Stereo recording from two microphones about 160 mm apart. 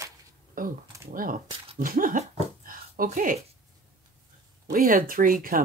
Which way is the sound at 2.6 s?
60° right (ahead or behind).